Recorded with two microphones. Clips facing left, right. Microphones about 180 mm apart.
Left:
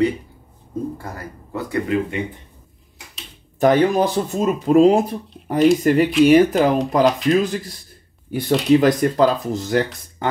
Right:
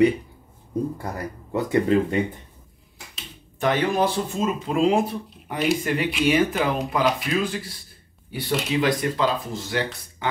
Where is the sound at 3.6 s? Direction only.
40° left (ahead or behind).